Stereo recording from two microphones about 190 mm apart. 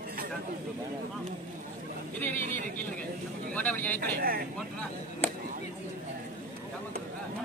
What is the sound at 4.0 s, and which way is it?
Speech, 50° right (ahead or behind).